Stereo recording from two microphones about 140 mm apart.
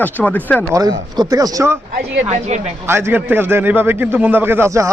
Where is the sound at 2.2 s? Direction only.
50° right (ahead or behind).